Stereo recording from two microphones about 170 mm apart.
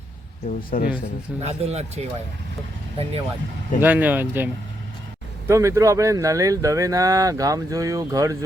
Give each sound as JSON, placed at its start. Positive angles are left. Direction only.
{"t": 0.7, "sound": "speech", "side_deg": 55}
{"t": 1.4, "sound": "speech", "side_deg": -40}
{"t": 3.8, "sound": "speech", "side_deg": -10}